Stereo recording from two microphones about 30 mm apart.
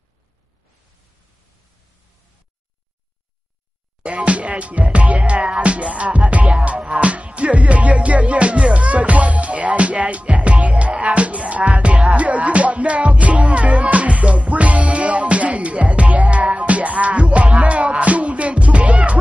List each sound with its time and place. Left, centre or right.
4.0 s speech: right
5.6 s music: right